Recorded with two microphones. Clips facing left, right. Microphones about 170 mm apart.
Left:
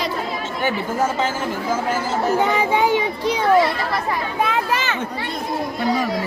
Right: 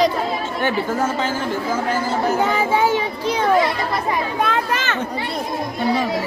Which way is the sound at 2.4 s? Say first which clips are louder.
Left 1 dB; 20° left (ahead or behind).